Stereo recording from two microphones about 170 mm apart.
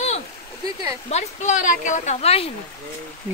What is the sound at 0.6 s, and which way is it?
Speech, 25° right (ahead or behind).